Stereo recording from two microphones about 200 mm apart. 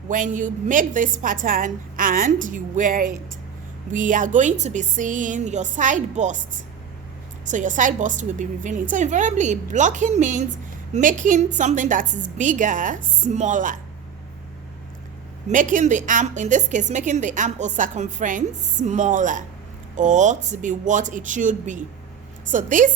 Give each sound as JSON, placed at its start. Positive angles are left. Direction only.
{"t": 0.1, "sound": "a woman's voice", "side_deg": -40}
{"t": 7.4, "sound": "a woman's voice", "side_deg": -40}
{"t": 15.4, "sound": "a woman's voice", "side_deg": -40}